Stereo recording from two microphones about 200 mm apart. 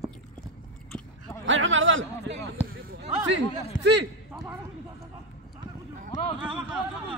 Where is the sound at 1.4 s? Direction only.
75° right (ahead or behind).